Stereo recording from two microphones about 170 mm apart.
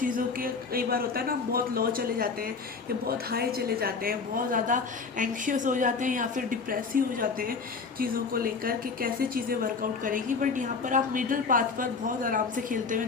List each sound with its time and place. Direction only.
0.0 s a woman's voice: 55° right (ahead or behind)